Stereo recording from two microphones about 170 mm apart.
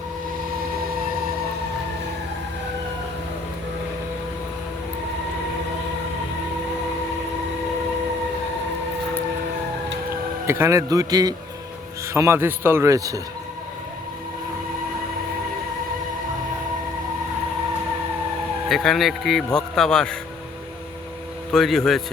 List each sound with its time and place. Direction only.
10.4 s a man's voice: 15° right (ahead or behind)
18.7 s a man's voice: centre (ahead or behind)
21.5 s a man's voice: centre (ahead or behind)